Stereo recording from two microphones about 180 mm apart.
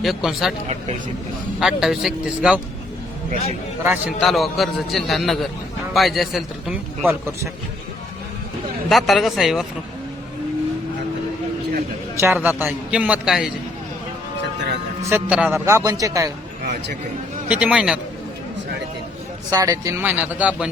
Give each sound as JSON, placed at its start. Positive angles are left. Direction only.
{"t": 0.0, "sound": "a man's voice", "side_deg": 0}
{"t": 1.5, "sound": "a man's voice", "side_deg": 0}
{"t": 3.8, "sound": "a man's voice", "side_deg": -10}
{"t": 8.9, "sound": "a man's voice", "side_deg": 0}
{"t": 12.1, "sound": "a man's voice", "side_deg": -10}
{"t": 15.1, "sound": "a man's voice", "side_deg": -10}
{"t": 17.5, "sound": "a man's voice", "side_deg": -5}
{"t": 19.5, "sound": "a man's voice", "side_deg": -20}